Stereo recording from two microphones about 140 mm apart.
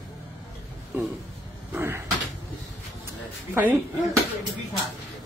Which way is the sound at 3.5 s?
15° right (ahead or behind).